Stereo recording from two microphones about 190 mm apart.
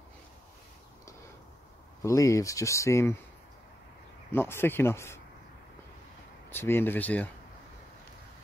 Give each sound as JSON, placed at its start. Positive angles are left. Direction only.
{"t": 2.0, "sound": "speech", "side_deg": 15}
{"t": 4.3, "sound": "speech", "side_deg": 10}
{"t": 6.5, "sound": "speech", "side_deg": 10}